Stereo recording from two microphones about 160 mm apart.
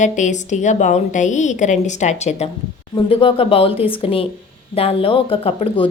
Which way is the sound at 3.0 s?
35° left (ahead or behind).